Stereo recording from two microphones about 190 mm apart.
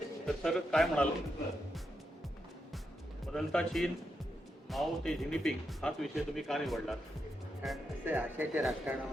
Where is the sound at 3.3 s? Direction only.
5° left (ahead or behind).